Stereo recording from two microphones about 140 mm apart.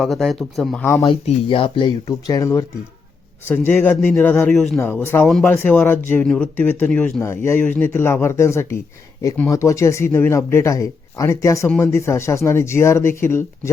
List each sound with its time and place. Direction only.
0.0 s speech: centre (ahead or behind)
0.8 s a man's voice: 20° left (ahead or behind)
1.0 s speech: 40° left (ahead or behind)
2.0 s a man's voice: 25° left (ahead or behind)
4.5 s speech: centre (ahead or behind)
4.9 s a man's voice: 15° left (ahead or behind)
7.2 s speech: 20° left (ahead or behind)